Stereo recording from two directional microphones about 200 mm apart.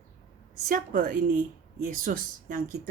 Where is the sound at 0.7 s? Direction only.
45° right (ahead or behind).